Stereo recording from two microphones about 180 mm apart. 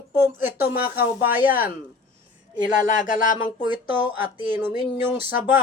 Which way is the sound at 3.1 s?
45° left (ahead or behind).